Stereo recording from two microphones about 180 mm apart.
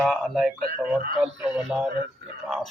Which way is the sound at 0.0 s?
Centre (ahead or behind).